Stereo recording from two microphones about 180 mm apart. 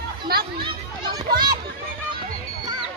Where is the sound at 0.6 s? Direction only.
25° right (ahead or behind).